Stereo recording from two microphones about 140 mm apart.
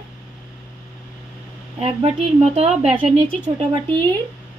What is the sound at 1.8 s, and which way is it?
A woman's voice, 45° right (ahead or behind).